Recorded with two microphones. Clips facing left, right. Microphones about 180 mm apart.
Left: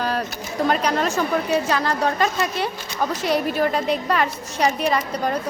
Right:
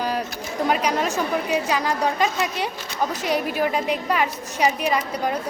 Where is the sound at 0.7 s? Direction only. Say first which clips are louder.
Left 1 dB; 10° right (ahead or behind).